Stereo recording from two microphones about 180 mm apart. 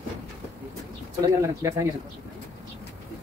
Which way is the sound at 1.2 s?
15° right (ahead or behind).